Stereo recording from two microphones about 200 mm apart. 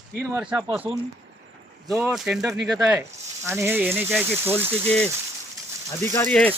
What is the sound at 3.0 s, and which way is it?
Speech, 15° right (ahead or behind).